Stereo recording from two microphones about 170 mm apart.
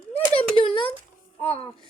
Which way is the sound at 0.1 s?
35° left (ahead or behind).